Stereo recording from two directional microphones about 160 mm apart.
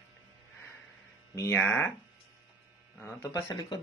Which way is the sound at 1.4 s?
15° left (ahead or behind).